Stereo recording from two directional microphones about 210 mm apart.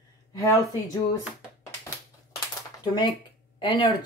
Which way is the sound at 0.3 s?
15° left (ahead or behind).